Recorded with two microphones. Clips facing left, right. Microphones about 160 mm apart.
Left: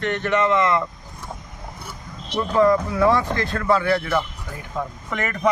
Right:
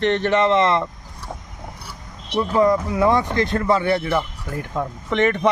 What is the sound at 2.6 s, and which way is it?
Speech, 20° right (ahead or behind).